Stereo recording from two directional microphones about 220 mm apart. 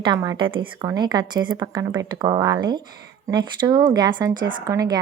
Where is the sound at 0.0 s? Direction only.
15° right (ahead or behind).